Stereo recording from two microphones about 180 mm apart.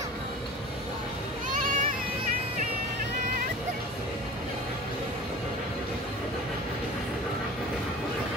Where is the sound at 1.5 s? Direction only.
50° right (ahead or behind).